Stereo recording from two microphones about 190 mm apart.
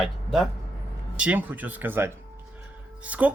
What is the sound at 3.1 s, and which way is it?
Speech, 5° right (ahead or behind).